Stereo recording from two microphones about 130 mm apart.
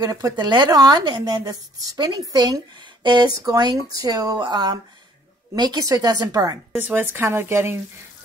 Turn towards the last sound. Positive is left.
turn(degrees=-20)  # may be behind; listen again after turning